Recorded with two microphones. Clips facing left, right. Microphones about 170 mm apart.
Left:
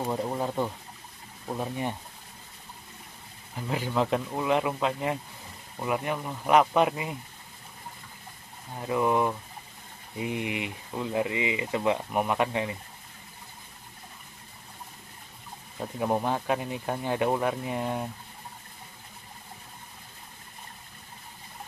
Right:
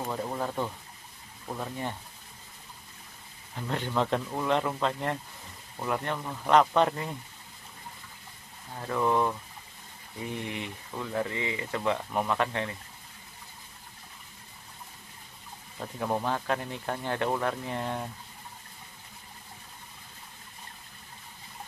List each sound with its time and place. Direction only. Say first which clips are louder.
0.0 s speech: left 3 dB; 15° left (ahead or behind)
3.5 s speech: left 2 dB; 5° left (ahead or behind)
8.7 s speech: left 2 dB; 10° left (ahead or behind)
15.8 s speech: left 3 dB; 15° left (ahead or behind)